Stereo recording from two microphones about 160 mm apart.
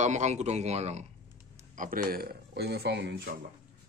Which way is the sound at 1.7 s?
60° right (ahead or behind).